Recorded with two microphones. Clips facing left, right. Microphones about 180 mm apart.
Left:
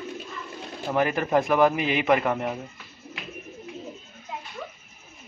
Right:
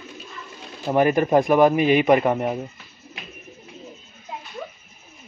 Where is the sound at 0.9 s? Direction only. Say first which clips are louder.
Right 6 dB; 25° right (ahead or behind).